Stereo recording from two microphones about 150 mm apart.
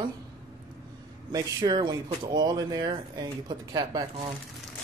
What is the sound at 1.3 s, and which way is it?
Speech, 30° right (ahead or behind).